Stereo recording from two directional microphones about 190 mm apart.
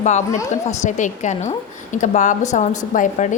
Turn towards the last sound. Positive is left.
turn(degrees=40)  # may be behind; listen again after turning